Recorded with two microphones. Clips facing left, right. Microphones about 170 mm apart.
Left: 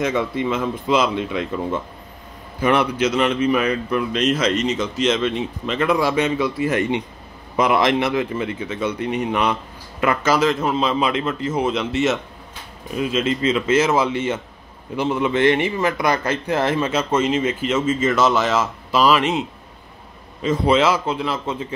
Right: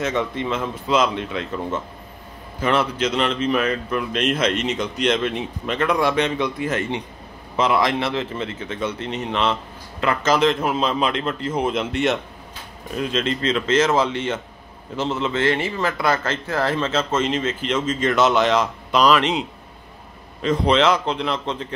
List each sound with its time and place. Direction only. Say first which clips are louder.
0.0 s a man's voice: left 2 dB; 10° left (ahead or behind)
4.1 s speech: left 2 dB; 55° right (ahead or behind)
4.6 s a man's voice: left 3 dB; centre (ahead or behind)
10.6 s a man's voice: left 1 dB; 5° right (ahead or behind)
10.9 s a man's voice: left 2 dB; 5° left (ahead or behind)
20.4 s a man's voice: left 1 dB; 5° left (ahead or behind)